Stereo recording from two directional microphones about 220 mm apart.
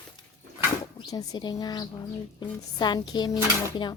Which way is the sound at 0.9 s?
15° left (ahead or behind).